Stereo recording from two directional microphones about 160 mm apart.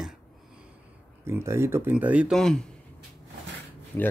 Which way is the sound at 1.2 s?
15° right (ahead or behind).